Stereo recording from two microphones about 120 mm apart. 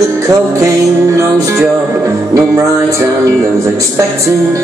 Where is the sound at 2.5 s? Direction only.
25° right (ahead or behind).